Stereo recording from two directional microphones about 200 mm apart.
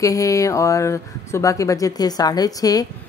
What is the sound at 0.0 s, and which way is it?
Speech, 15° left (ahead or behind).